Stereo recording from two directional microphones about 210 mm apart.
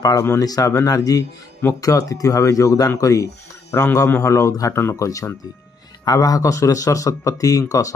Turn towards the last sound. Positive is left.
turn(degrees=15)  # may be behind; listen again after turning